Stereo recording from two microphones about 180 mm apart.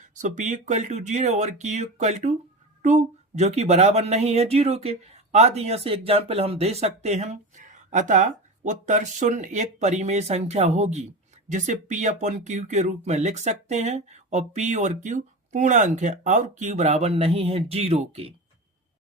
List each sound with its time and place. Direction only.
0.0 s speech: 45° right (ahead or behind)